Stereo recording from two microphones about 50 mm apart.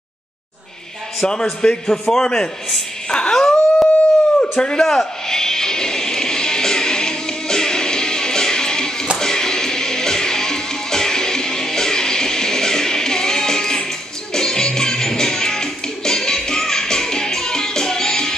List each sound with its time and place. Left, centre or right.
1.2 s a man's voice: centre
3.1 s howl: centre
4.4 s a sound: centre
4.8 s music: centre